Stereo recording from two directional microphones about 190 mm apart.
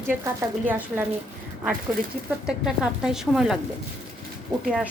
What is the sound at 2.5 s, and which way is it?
Speech, 5° right (ahead or behind).